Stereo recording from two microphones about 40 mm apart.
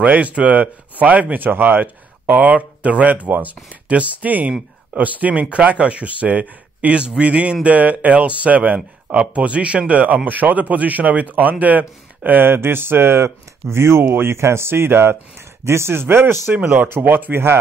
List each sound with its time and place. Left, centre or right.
0.0 s speech: right
7.0 s a man's voice: right
7.6 s speech: right
12.4 s speech: right
16.9 s speech: right